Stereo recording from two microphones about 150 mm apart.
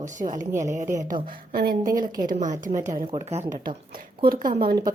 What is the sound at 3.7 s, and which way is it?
A woman's voice, 70° right (ahead or behind).